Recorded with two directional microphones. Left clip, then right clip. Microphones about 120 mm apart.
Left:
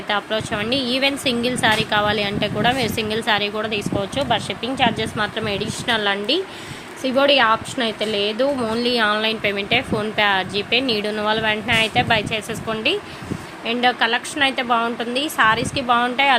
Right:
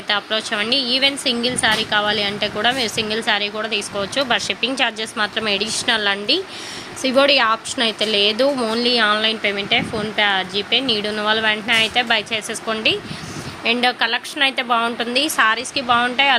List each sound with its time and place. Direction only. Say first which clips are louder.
0.1 s a woman's voice: right 2 dB; centre (ahead or behind)